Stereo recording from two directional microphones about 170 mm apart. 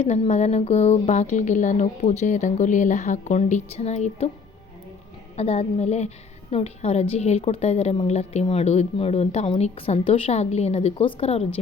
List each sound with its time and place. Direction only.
0.0 s speech: 40° left (ahead or behind)
5.4 s speech: 35° left (ahead or behind)